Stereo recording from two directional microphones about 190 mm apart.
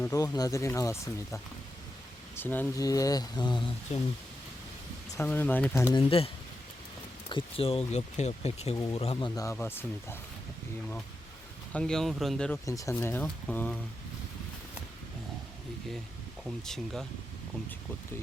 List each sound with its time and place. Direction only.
0.0 s speech: 20° left (ahead or behind)
3.9 s speech: 35° left (ahead or behind)
5.1 s speech: 10° left (ahead or behind)
6.0 s speech: 30° left (ahead or behind)
9.1 s speech: 20° left (ahead or behind)
11.7 s speech: 5° left (ahead or behind)
12.6 s speech: 15° left (ahead or behind)
16.4 s speech: centre (ahead or behind)